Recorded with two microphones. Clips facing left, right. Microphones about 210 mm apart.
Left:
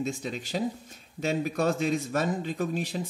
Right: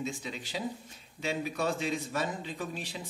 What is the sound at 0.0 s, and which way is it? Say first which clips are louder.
Speech: left 5 dB; 45° left (ahead or behind).